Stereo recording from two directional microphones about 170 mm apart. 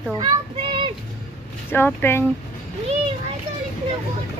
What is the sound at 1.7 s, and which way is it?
Speech, 10° left (ahead or behind).